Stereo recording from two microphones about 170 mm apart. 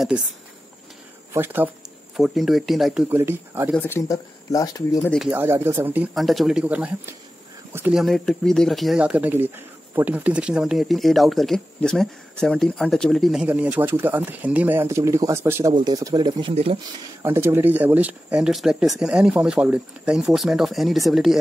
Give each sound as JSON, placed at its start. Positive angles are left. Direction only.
{"t": 1.3, "sound": "speech", "side_deg": -10}
{"t": 2.1, "sound": "speech", "side_deg": 0}
{"t": 3.2, "sound": "speech", "side_deg": -15}
{"t": 3.7, "sound": "speech", "side_deg": 15}
{"t": 5.3, "sound": "speech", "side_deg": -15}
{"t": 6.1, "sound": "speech", "side_deg": 0}
{"t": 8.0, "sound": "speech", "side_deg": 0}
{"t": 17.2, "sound": "speech", "side_deg": -15}